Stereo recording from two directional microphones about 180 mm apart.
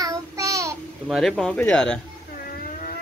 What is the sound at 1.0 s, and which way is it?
Speech, centre (ahead or behind).